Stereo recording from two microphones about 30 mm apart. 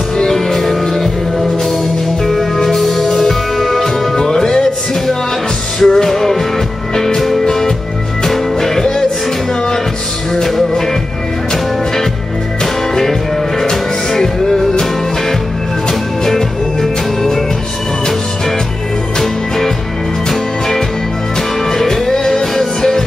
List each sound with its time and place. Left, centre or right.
0.3 s music: centre
5.8 s music: centre
7.4 s music: centre
13.6 s music: centre
19.1 s music: centre